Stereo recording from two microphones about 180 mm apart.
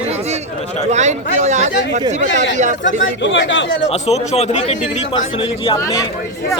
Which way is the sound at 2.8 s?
85° left.